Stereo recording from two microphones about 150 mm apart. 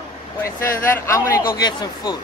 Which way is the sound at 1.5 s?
30° left (ahead or behind).